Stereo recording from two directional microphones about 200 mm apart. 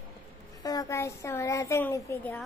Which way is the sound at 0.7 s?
15° left (ahead or behind).